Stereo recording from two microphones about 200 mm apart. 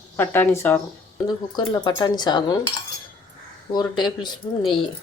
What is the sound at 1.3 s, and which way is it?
Speech, 20° left (ahead or behind).